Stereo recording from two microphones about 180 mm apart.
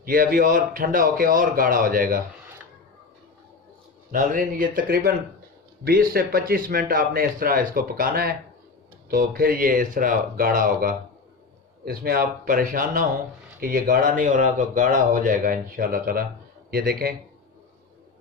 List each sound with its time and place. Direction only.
0.0 s speech: 50° right (ahead or behind)
4.1 s speech: 50° right (ahead or behind)
11.8 s a man's voice: 60° right (ahead or behind)